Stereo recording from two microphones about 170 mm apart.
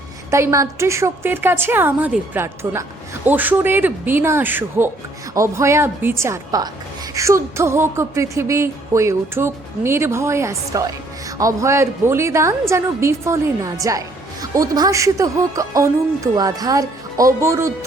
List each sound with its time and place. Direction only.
0.3 s music: 15° right (ahead or behind)
14.5 s speech: 20° right (ahead or behind)